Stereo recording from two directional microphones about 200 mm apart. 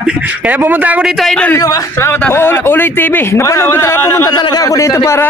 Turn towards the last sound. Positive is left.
turn(degrees=15)  # may be behind; listen again after turning